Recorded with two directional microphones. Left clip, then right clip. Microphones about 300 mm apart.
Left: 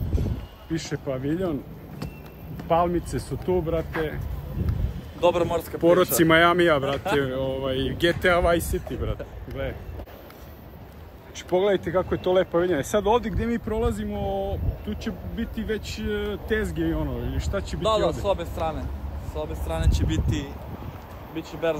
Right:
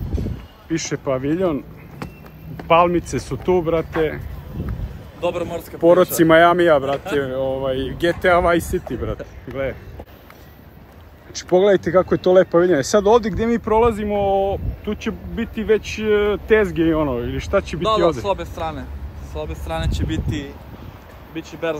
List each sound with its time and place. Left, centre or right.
0.7 s speech: centre
5.2 s speech: centre
5.8 s speech: centre; by 9.7 s right
11.3 s speech: right
17.8 s speech: right